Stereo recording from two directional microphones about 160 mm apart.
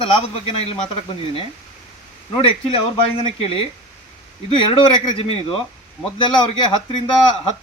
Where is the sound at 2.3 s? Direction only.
35° left (ahead or behind).